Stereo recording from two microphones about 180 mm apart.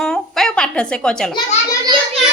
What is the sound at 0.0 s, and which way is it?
Babbling, centre (ahead or behind).